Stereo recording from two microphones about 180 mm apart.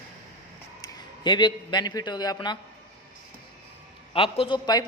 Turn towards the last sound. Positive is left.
turn(degrees=25)  # may be behind; listen again after turning